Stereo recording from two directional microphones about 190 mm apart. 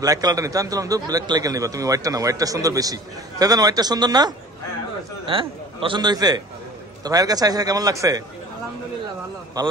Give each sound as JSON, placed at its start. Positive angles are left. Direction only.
{"t": 0.0, "sound": "a man's voice", "side_deg": -20}
{"t": 9.6, "sound": "a man's voice", "side_deg": -20}